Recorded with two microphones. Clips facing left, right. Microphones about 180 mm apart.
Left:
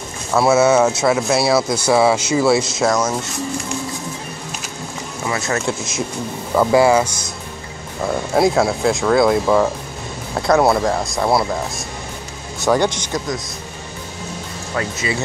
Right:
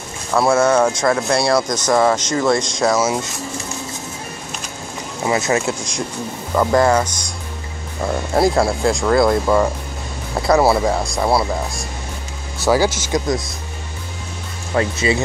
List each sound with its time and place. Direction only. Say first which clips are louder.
0.3 s speech: left 1 dB; 5° left (ahead or behind)
5.2 s speech: right 4 dB; 20° right (ahead or behind)
5.7 s speech: left 1 dB; 5° left (ahead or behind)
12.6 s speech: right 1 dB; 5° right (ahead or behind)
14.8 s speech: right 5 dB; 30° right (ahead or behind)